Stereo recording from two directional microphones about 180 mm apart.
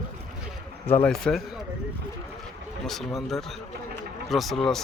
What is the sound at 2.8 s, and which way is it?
A man's voice, centre (ahead or behind).